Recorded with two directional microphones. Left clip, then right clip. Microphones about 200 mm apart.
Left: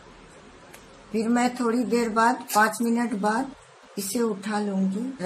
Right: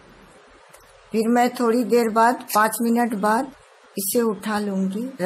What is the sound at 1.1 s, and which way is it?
Speech, 45° right (ahead or behind).